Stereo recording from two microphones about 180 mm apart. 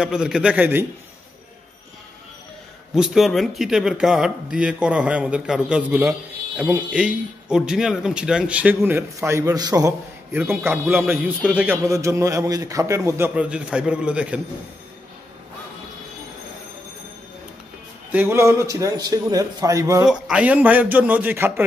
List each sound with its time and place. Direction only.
0.0 s a man's voice: 5° right (ahead or behind)
2.9 s speech: centre (ahead or behind)
18.1 s speech: 15° right (ahead or behind)
20.1 s speech: 5° right (ahead or behind)